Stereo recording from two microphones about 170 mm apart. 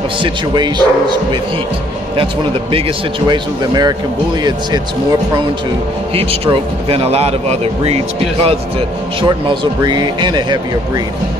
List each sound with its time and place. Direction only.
0.2 s speech: 25° right (ahead or behind)
3.3 s speech: 25° right (ahead or behind)
6.1 s speech: 35° right (ahead or behind)